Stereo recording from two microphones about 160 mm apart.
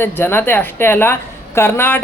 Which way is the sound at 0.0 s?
15° left (ahead or behind).